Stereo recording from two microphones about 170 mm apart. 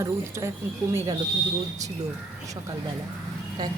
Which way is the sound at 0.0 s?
15° right (ahead or behind).